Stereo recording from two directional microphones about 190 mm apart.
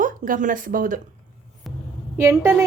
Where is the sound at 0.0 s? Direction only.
45° right (ahead or behind).